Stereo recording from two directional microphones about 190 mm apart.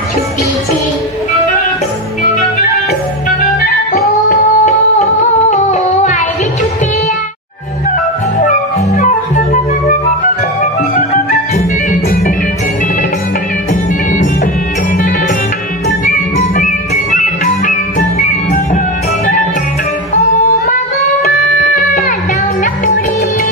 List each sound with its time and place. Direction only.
4.3 s music: 35° left (ahead or behind)
5.5 s humming: 35° left (ahead or behind)
8.4 s music: 45° left (ahead or behind)
16.1 s music: 40° left (ahead or behind)
21.7 s music: 45° left (ahead or behind)